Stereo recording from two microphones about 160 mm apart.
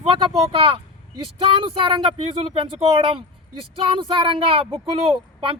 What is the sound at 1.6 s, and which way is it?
Speech, 35° right (ahead or behind).